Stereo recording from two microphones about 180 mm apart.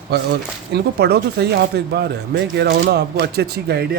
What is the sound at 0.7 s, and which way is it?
Speech, 65° right (ahead or behind).